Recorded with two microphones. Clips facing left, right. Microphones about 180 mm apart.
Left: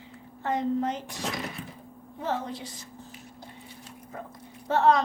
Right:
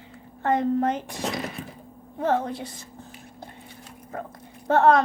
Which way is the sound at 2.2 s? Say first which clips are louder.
Right 7 dB; 55° right (ahead or behind).